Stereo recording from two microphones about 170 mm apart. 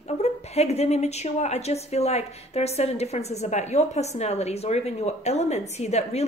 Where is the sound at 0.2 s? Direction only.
40° left (ahead or behind).